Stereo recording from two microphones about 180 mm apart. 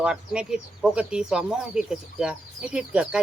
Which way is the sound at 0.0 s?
5° right (ahead or behind).